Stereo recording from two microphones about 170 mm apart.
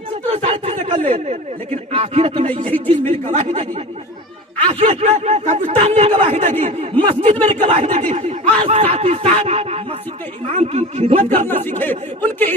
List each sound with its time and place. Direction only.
0.4 s speech: 35° right (ahead or behind)
2.7 s speech: 10° left (ahead or behind)
3.1 s speech: 40° right (ahead or behind)
11.3 s speech: 10° left (ahead or behind)